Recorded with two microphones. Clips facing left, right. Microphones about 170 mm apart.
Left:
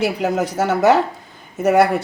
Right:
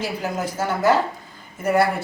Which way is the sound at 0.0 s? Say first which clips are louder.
Left 7 dB; 75° left (ahead or behind).